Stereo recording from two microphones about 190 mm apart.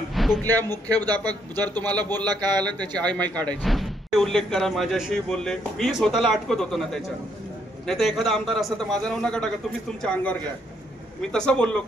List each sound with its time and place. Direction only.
0.1 s a sound: centre (ahead or behind)
0.8 s a man's voice: 20° right (ahead or behind)
1.9 s speech: 10° left (ahead or behind)
2.1 s a man's voice: 20° right (ahead or behind)
2.5 s speech: 5° left (ahead or behind)
11.3 s speech: 5° left (ahead or behind)